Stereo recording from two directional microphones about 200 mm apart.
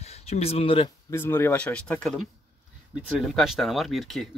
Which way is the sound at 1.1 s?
10° left (ahead or behind).